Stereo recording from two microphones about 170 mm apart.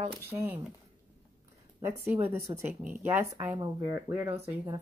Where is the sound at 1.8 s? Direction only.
10° right (ahead or behind).